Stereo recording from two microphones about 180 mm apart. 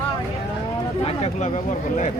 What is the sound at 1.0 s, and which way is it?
Speech, 35° left (ahead or behind).